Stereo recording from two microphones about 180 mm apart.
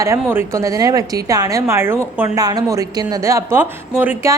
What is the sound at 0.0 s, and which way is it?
A woman's voice, 15° right (ahead or behind).